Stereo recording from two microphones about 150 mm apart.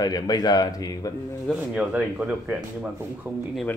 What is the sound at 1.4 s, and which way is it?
Speech, 5° right (ahead or behind).